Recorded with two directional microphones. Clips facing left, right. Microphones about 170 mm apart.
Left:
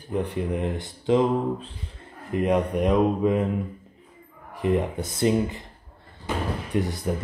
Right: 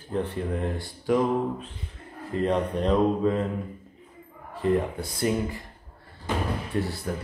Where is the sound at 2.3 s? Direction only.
15° left (ahead or behind).